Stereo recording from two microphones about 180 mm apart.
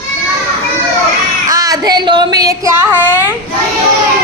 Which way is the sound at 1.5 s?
20° right (ahead or behind).